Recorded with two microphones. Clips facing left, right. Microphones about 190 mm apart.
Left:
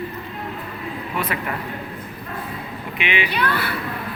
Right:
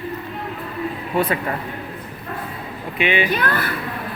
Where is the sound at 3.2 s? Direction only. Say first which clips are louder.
Right 2 dB; 45° right (ahead or behind).